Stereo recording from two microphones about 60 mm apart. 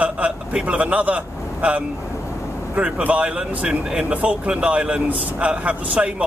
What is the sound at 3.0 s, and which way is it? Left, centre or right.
Speech, right.